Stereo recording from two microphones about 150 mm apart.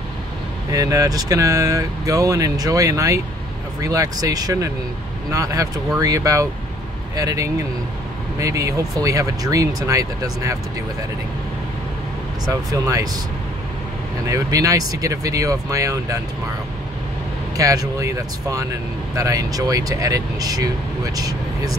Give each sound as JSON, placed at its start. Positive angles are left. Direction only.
{"t": 0.7, "sound": "speech", "side_deg": -20}
{"t": 12.7, "sound": "speech", "side_deg": -20}
{"t": 14.2, "sound": "speech", "side_deg": -20}
{"t": 17.6, "sound": "speech", "side_deg": -20}